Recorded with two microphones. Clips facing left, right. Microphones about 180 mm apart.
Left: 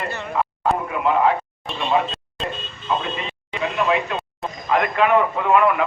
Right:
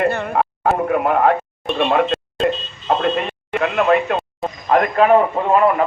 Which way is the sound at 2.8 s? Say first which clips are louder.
Right 7 dB; 60° right (ahead or behind).